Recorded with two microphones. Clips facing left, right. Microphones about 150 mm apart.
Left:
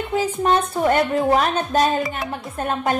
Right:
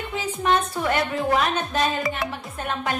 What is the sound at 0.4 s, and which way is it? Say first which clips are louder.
A woman's voice: left 2 dB; 35° left (ahead or behind).